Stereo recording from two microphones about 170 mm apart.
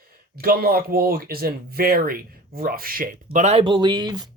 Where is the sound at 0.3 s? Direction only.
60° right (ahead or behind); by 3.7 s 40° right (ahead or behind).